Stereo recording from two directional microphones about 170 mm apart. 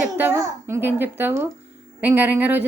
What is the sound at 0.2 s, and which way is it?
A woman's voice, 15° right (ahead or behind).